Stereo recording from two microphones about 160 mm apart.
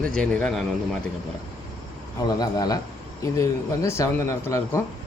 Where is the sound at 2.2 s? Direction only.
25° left (ahead or behind).